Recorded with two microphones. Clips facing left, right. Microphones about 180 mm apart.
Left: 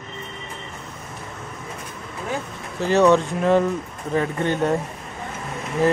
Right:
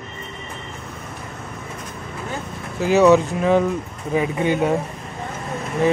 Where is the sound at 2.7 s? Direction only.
5° right (ahead or behind).